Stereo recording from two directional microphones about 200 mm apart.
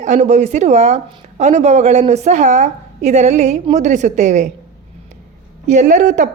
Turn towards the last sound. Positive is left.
turn(degrees=-40)  # may be behind; listen again after turning